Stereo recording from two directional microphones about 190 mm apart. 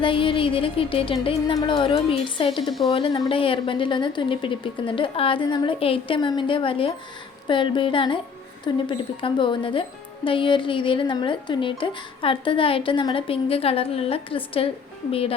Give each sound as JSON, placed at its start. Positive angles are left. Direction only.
{"t": 0.0, "sound": "speech", "side_deg": 25}